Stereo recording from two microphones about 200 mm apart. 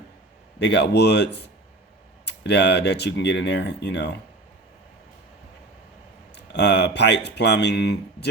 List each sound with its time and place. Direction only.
0.6 s speech: 60° left (ahead or behind)
6.3 s speech: 60° left (ahead or behind)